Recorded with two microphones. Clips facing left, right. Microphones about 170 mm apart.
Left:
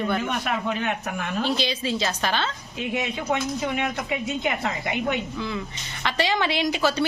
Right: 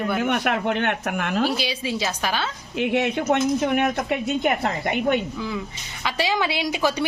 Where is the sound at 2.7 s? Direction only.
70° right (ahead or behind).